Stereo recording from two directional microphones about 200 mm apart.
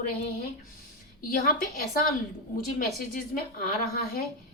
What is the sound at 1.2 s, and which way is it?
Speech, 45° left (ahead or behind).